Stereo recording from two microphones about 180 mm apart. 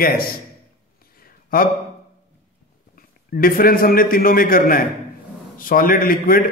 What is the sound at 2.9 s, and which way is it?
A man's voice, 55° left (ahead or behind).